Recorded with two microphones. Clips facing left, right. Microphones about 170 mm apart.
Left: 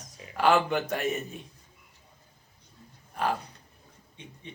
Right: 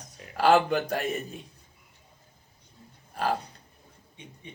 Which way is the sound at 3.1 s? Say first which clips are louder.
Right 1 dB; 35° right (ahead or behind).